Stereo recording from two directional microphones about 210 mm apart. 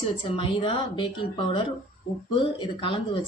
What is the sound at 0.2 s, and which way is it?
A woman's voice, 25° left (ahead or behind).